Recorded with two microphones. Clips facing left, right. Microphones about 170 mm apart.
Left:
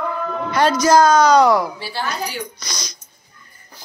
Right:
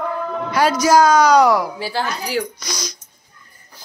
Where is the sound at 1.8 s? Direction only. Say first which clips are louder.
Right 2 dB; 90° right.